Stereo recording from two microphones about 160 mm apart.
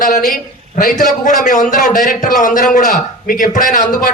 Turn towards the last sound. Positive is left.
turn(degrees=50)  # may be behind; listen again after turning